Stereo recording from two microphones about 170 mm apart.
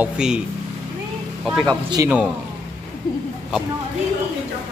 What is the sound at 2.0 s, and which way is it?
Speech, 20° right (ahead or behind).